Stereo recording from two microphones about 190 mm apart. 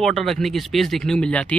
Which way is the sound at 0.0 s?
Centre (ahead or behind).